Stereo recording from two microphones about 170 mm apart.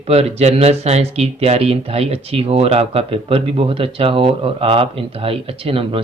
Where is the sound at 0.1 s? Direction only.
40° right (ahead or behind).